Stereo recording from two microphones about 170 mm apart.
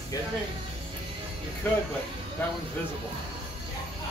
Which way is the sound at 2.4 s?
10° left (ahead or behind).